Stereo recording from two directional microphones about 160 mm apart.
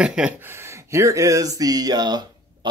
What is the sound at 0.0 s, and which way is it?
Speech, 5° right (ahead or behind).